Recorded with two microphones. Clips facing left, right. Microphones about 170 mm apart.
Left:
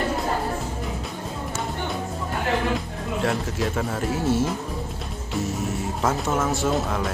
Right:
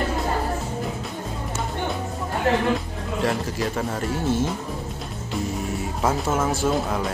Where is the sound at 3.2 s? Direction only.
Centre (ahead or behind).